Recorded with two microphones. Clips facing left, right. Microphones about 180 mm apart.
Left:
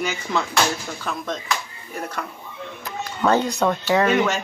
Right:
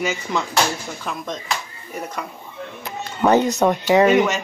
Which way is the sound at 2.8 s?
20° right (ahead or behind).